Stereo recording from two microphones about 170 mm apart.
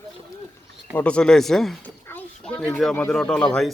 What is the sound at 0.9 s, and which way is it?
Speech, 5° left (ahead or behind).